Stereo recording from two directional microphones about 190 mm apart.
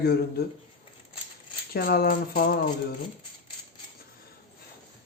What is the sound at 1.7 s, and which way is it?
Speech, 50° left (ahead or behind).